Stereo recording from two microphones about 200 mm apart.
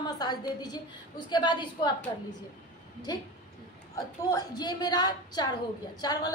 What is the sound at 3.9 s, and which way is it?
A woman's voice, 20° left (ahead or behind).